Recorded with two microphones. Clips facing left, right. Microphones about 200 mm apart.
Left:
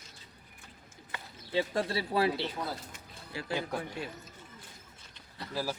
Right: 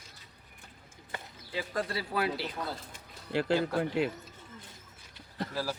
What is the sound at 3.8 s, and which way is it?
Speech, 70° right (ahead or behind).